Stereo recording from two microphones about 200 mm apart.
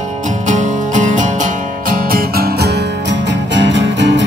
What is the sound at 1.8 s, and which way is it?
Music, 50° right (ahead or behind).